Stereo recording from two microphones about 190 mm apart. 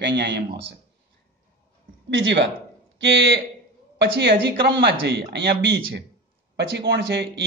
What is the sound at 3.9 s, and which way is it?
Speech, 65° right (ahead or behind).